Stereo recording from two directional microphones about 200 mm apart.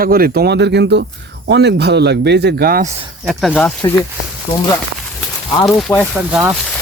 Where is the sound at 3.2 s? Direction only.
5° left (ahead or behind).